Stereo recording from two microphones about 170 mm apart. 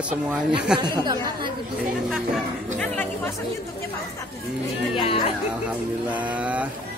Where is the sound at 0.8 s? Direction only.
25° right (ahead or behind).